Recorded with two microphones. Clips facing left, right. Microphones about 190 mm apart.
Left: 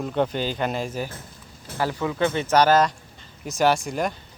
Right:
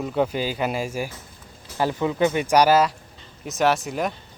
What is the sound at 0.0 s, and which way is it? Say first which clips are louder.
Speech: right 1 dB; 5° right (ahead or behind).